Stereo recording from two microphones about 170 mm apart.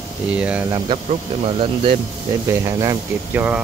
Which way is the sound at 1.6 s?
30° right (ahead or behind).